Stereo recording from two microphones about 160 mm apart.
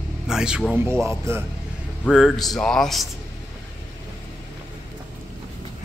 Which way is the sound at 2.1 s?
Centre (ahead or behind).